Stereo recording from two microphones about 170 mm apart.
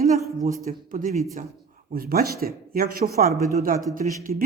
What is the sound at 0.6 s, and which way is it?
A man's voice, 55° right (ahead or behind).